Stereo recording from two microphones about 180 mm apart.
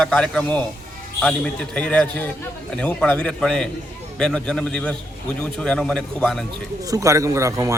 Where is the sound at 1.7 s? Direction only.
5° left (ahead or behind).